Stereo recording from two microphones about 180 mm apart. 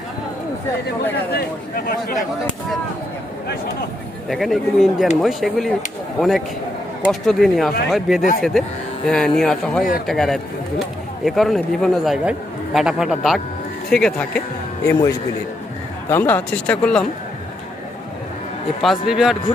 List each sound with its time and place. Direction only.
1.3 s speech: 60° left (ahead or behind)
4.3 s speech: centre (ahead or behind)
16.0 s speech: 10° left (ahead or behind)
18.8 s speech: centre (ahead or behind)